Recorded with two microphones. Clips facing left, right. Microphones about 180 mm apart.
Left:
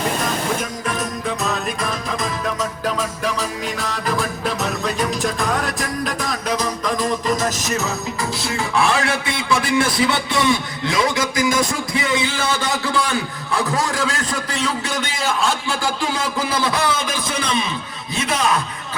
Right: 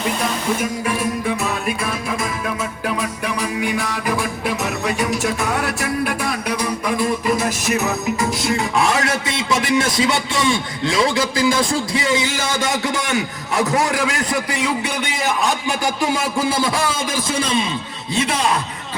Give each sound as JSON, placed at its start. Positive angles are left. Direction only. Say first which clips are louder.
{"t": 0.6, "sound": "a man's voice", "louder": "right 3 dB", "side_deg": -10}
{"t": 1.5, "sound": "music", "louder": "right 1 dB", "side_deg": -10}
{"t": 14.0, "sound": "a man's voice", "louder": "right 2 dB", "side_deg": -15}